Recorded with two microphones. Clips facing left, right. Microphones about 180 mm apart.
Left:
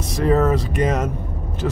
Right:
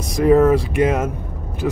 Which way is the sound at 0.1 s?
10° right (ahead or behind).